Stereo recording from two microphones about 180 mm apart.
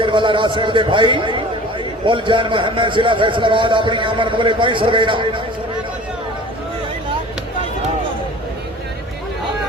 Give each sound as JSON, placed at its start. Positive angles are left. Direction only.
{"t": 0.0, "sound": "a man's voice", "side_deg": -25}